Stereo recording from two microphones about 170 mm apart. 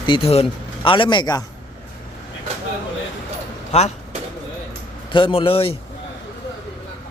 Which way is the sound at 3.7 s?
40° left (ahead or behind).